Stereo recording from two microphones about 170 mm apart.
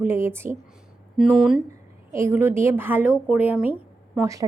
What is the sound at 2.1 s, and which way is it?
Speech, 15° right (ahead or behind).